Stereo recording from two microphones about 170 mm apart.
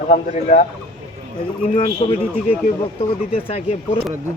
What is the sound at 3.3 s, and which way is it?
Speech, 35° left (ahead or behind).